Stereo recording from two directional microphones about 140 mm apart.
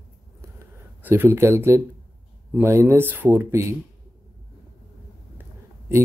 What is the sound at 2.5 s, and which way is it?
Speech, 15° right (ahead or behind).